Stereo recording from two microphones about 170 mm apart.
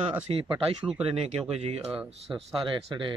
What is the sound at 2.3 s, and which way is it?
Speech, 20° right (ahead or behind).